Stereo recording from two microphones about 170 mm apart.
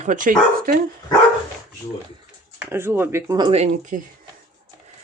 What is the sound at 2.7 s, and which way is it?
Speech, 15° right (ahead or behind).